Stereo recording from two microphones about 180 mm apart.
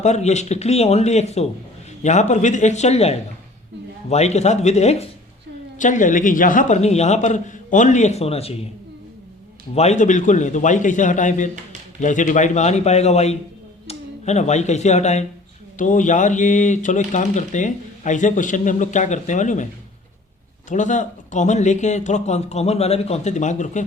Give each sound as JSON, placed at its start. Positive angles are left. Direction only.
{"t": 0.0, "sound": "speech", "side_deg": 40}
{"t": 9.7, "sound": "speech", "side_deg": 40}
{"t": 20.7, "sound": "speech", "side_deg": 45}